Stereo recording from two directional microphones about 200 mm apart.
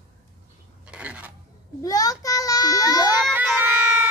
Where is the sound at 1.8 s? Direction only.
20° left (ahead or behind).